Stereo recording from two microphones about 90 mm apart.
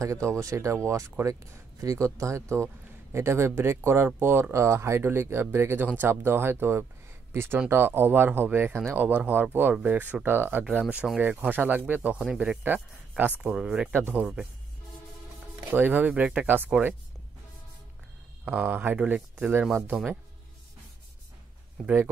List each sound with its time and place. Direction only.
0.0 s speech: 35° right (ahead or behind)
10.7 s speech: 15° right (ahead or behind)
13.9 s speech: 25° right (ahead or behind)
14.2 s speech: 10° right (ahead or behind)
15.7 s speech: 20° right (ahead or behind)
18.4 s speech: 20° right (ahead or behind)
18.9 s speech: 10° right (ahead or behind)